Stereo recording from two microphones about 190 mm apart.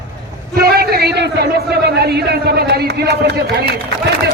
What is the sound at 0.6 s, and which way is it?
A man's voice, 55° right (ahead or behind).